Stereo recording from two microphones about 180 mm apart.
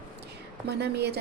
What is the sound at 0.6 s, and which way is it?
Speech, 65° right (ahead or behind).